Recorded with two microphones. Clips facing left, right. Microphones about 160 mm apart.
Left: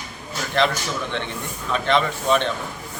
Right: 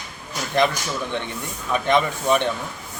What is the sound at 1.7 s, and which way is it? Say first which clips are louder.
Speech: right 1 dB; 15° right (ahead or behind).